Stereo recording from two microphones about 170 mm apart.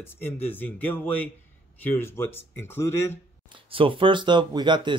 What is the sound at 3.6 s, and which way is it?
Speech, 30° right (ahead or behind).